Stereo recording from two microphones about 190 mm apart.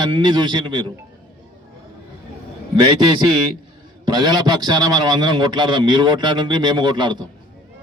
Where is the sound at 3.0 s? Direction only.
25° right (ahead or behind).